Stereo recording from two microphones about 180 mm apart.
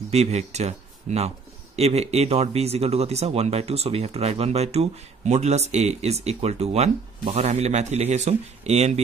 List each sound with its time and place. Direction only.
0.1 s speech: 35° right (ahead or behind)